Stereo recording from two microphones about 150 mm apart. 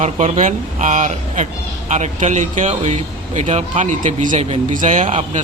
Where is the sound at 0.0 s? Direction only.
50° right (ahead or behind).